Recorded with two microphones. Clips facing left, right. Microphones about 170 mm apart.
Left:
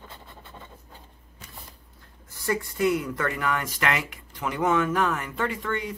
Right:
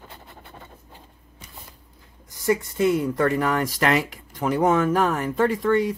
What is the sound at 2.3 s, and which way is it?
Speech, 20° right (ahead or behind).